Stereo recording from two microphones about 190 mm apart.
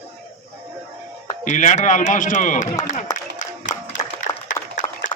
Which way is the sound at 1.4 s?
40° left (ahead or behind).